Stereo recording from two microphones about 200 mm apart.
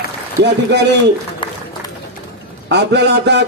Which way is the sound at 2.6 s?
55° right (ahead or behind).